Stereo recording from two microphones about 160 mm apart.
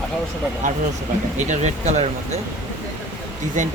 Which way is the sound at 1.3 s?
50° right (ahead or behind).